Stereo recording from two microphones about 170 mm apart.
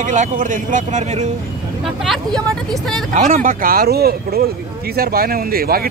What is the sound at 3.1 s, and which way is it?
Speech, 45° right (ahead or behind).